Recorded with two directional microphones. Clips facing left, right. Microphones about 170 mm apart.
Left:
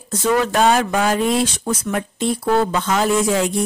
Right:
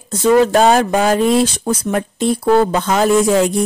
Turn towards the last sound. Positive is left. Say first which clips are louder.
# right 5 dB
turn(degrees=-45)  # may be behind; listen again after turning